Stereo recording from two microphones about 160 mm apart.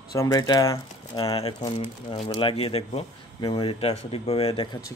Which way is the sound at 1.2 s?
40° left (ahead or behind).